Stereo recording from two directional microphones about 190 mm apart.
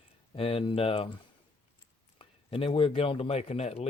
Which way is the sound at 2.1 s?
30° left (ahead or behind).